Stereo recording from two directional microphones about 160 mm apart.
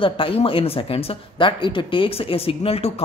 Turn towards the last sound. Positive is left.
turn(degrees=40)  # may be behind; listen again after turning